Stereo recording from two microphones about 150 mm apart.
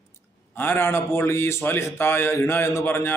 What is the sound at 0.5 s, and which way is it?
A man's voice, 15° left (ahead or behind).